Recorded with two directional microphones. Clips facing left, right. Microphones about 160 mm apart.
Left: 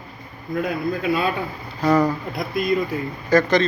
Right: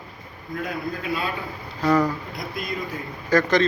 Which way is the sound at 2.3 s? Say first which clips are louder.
Left 9 dB; 65° left (ahead or behind).